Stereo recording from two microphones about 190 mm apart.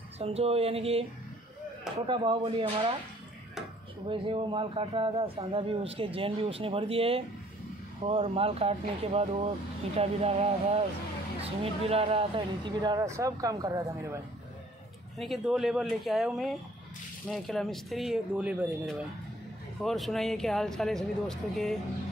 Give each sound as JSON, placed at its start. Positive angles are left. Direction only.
{"t": 0.2, "sound": "speech", "side_deg": -30}
{"t": 2.0, "sound": "a man's voice", "side_deg": -25}
{"t": 4.1, "sound": "a man's voice", "side_deg": -25}
{"t": 15.1, "sound": "speech", "side_deg": 0}